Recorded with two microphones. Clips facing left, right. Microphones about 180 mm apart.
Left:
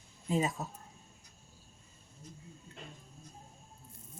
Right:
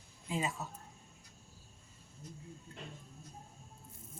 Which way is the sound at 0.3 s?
40° left (ahead or behind).